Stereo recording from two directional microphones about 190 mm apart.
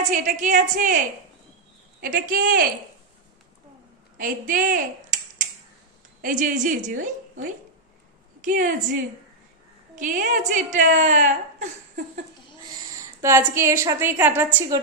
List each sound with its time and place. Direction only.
0.1 s a woman's voice: 40° right (ahead or behind)
4.2 s a woman's voice: 45° right (ahead or behind)
6.2 s a woman's voice: 45° right (ahead or behind)
9.9 s a woman's voice: 40° right (ahead or behind)
13.2 s a woman's voice: 15° right (ahead or behind)